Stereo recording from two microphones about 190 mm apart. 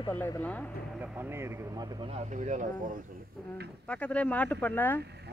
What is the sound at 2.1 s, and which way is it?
Speech, 40° right (ahead or behind).